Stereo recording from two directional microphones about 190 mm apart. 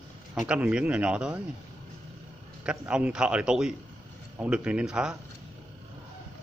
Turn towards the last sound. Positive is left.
turn(degrees=-5)  # may be behind; listen again after turning